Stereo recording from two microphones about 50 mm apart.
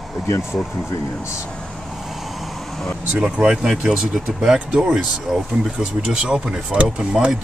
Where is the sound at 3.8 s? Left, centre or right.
Right.